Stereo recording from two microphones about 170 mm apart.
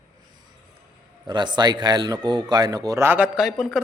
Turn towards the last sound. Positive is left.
turn(degrees=-5)  # may be behind; listen again after turning